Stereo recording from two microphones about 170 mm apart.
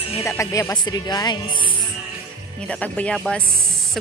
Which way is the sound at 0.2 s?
15° left (ahead or behind).